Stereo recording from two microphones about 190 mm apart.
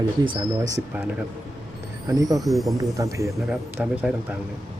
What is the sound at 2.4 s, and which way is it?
Speech, centre (ahead or behind).